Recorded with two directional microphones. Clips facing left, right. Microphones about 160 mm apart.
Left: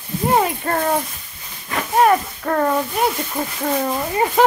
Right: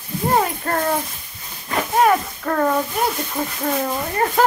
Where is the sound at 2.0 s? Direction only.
5° left (ahead or behind).